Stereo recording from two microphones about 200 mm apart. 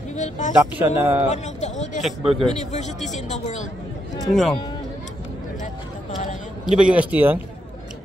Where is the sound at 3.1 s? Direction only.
35° left (ahead or behind).